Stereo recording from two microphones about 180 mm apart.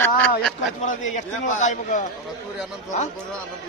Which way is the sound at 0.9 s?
45° left (ahead or behind).